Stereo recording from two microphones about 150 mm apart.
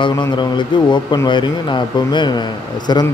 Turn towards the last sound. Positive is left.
turn(degrees=30)  # may be behind; listen again after turning